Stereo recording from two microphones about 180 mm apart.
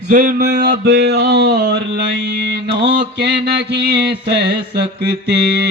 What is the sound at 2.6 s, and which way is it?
Mantra, 70° right (ahead or behind).